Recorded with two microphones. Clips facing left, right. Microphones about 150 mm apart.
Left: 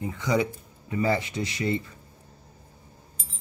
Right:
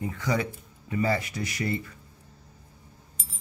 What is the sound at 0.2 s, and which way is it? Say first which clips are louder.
Speech: left 4 dB; 20° left (ahead or behind).